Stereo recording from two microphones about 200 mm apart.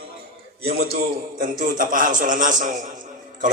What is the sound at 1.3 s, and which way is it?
A man's voice, 40° right (ahead or behind).